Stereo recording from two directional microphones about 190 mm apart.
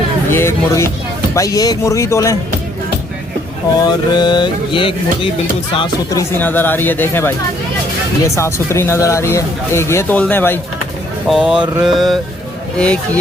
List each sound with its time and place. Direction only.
0.3 s speech: 15° left (ahead or behind)
3.8 s mantra: 20° left (ahead or behind)
5.7 s speech: 20° left (ahead or behind)
8.4 s speech: 15° left (ahead or behind)
11.3 s mantra: 5° right (ahead or behind)